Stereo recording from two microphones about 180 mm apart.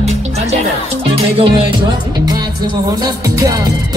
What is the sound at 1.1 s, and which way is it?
Music, 30° right (ahead or behind).